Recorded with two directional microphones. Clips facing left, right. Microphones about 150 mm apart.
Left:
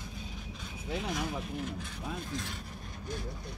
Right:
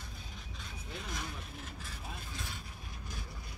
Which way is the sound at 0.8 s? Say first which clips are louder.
Left 10 dB; 90° left.